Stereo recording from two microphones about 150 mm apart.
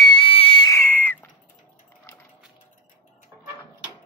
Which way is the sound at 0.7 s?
15° left (ahead or behind).